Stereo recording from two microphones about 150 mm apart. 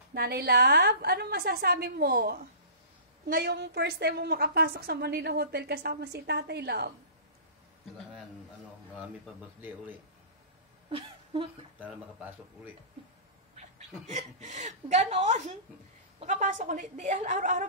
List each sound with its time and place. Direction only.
0.1 s a woman's voice: 90° right
8.9 s speech: 10° right (ahead or behind)
10.9 s a sound: 35° right (ahead or behind)
11.8 s speech: 10° right (ahead or behind)
13.6 s a woman's voice: 55° right (ahead or behind)